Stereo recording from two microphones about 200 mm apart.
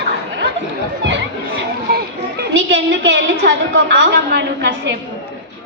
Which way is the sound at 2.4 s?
65° right (ahead or behind).